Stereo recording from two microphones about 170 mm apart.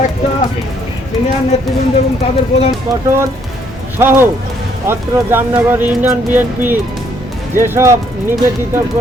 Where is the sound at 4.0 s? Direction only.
15° right (ahead or behind).